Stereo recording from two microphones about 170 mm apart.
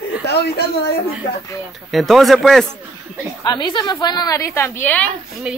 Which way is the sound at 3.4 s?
25° left (ahead or behind).